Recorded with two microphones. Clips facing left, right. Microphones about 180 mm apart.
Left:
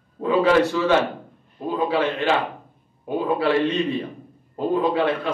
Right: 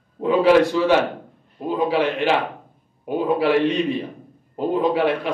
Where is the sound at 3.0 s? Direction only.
15° right (ahead or behind).